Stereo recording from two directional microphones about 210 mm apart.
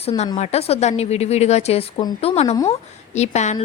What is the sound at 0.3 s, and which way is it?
A woman's voice, 30° left (ahead or behind).